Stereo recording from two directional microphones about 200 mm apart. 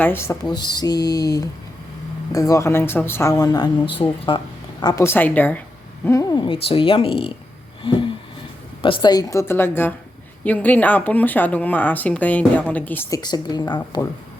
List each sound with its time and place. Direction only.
0.0 s speech: 10° left (ahead or behind)
6.1 s speech: 20° left (ahead or behind)
7.8 s a sound: 25° left (ahead or behind)
8.8 s speech: 25° left (ahead or behind)